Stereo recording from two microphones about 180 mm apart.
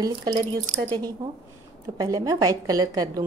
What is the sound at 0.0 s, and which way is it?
A woman's voice, 20° right (ahead or behind).